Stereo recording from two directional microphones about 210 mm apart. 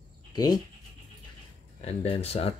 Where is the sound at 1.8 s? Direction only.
30° left (ahead or behind).